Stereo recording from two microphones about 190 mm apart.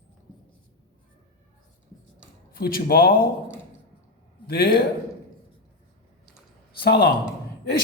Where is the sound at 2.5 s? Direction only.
50° left (ahead or behind).